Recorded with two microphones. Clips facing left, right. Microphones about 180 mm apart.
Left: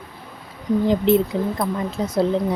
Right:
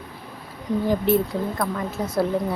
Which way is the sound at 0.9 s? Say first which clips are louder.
Left 3 dB; 20° left (ahead or behind).